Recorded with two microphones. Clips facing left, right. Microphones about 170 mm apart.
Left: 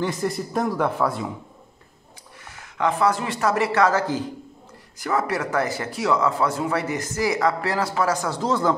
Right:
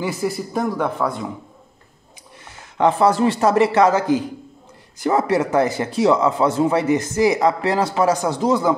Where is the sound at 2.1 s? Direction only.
25° right (ahead or behind).